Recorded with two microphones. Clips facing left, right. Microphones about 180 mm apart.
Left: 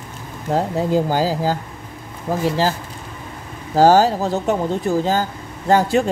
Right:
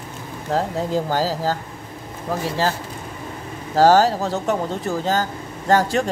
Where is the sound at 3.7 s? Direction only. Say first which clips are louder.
Left 1 dB; 15° left (ahead or behind).